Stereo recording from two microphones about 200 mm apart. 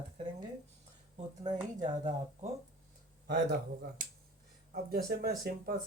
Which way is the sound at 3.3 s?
50° right (ahead or behind).